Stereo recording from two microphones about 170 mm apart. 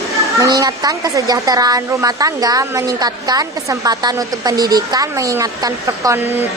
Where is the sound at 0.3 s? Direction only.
20° right (ahead or behind).